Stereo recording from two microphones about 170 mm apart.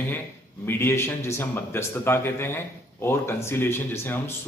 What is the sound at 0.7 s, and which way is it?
Speech, 15° left (ahead or behind).